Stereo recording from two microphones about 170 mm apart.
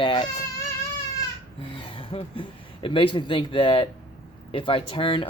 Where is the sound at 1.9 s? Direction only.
30° left (ahead or behind).